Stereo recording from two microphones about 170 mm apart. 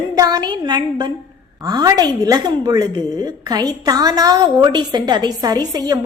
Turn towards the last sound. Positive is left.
turn(degrees=-20)  # may be behind; listen again after turning